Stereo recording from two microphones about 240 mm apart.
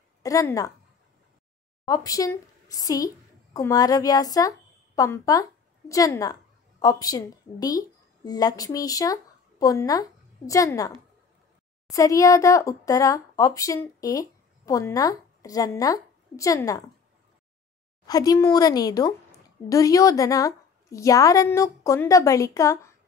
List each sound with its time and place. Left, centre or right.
0.2 s a woman's voice: centre
1.9 s a woman's voice: centre
18.0 s a woman's voice: centre